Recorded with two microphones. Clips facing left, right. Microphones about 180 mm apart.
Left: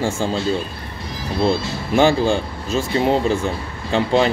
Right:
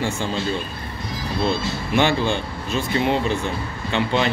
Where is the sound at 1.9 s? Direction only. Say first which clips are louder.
Left 5 dB; 35° left (ahead or behind).